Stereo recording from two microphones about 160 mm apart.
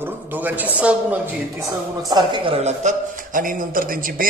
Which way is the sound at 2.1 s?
30° right (ahead or behind).